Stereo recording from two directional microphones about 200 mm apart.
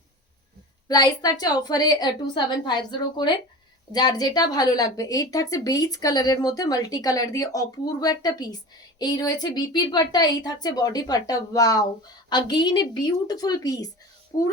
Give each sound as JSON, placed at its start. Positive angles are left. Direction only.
{"t": 0.9, "sound": "speech", "side_deg": 20}